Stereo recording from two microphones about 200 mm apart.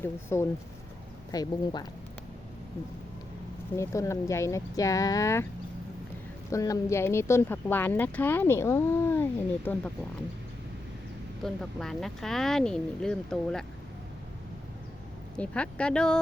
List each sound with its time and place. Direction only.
0.0 s speech: 10° left (ahead or behind)
3.8 s speech: 15° left (ahead or behind)
6.5 s speech: 15° left (ahead or behind)
11.4 s speech: centre (ahead or behind)
15.4 s speech: 5° left (ahead or behind)